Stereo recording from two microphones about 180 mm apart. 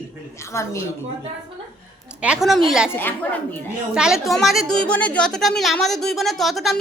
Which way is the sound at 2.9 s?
10° left (ahead or behind).